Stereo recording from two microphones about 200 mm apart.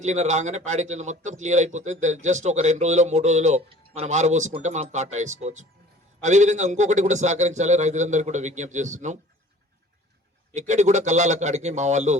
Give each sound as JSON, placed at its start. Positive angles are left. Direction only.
{"t": 0.0, "sound": "speech", "side_deg": -35}
{"t": 10.5, "sound": "speech", "side_deg": -35}